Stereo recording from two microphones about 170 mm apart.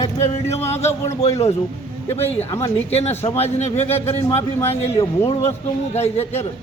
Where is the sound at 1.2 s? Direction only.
40° left (ahead or behind).